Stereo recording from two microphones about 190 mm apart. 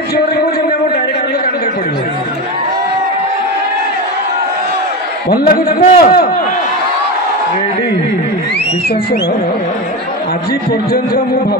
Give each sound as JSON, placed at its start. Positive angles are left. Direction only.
{"t": 5.3, "sound": "a man's voice", "side_deg": 50}